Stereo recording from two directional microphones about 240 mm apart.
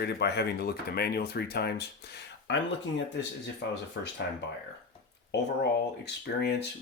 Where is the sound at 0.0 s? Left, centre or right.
Left.